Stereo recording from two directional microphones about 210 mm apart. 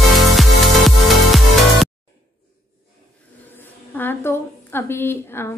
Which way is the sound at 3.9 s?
10° left (ahead or behind).